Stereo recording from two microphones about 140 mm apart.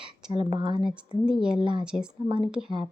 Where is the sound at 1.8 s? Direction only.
5° right (ahead or behind).